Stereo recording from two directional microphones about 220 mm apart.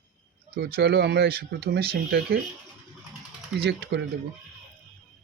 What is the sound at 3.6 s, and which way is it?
Speech, 50° right (ahead or behind).